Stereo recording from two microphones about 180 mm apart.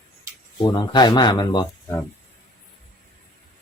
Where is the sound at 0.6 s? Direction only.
25° left (ahead or behind).